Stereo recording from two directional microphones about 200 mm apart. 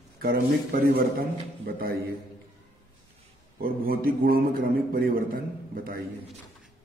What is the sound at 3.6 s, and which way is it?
A man's voice, 45° right (ahead or behind).